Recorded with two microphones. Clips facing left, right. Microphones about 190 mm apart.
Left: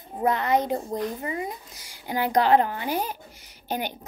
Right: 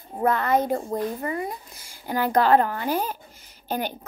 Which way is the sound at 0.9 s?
50° right (ahead or behind).